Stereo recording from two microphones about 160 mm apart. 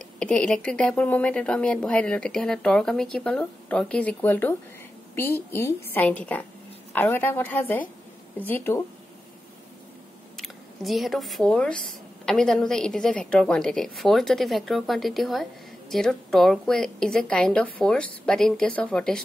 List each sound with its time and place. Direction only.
0.0 s speech: 5° left (ahead or behind)
10.3 s speech: centre (ahead or behind)